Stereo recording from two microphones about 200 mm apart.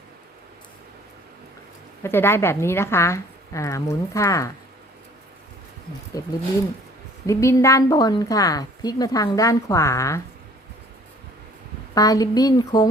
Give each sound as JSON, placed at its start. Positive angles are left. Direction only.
{"t": 2.0, "sound": "a woman's voice", "side_deg": 10}
{"t": 6.2, "sound": "a woman's voice", "side_deg": 20}
{"t": 11.9, "sound": "a woman's voice", "side_deg": 20}